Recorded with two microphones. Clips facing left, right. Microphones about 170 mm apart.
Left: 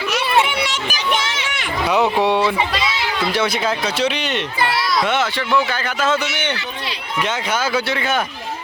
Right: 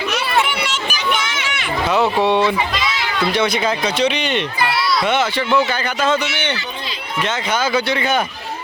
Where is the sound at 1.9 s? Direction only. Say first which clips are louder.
Even; 15° left (ahead or behind).